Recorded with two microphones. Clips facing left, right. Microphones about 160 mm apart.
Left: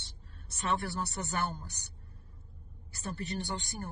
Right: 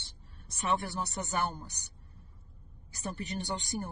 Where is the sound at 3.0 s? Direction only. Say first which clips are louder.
Even; 20° right (ahead or behind).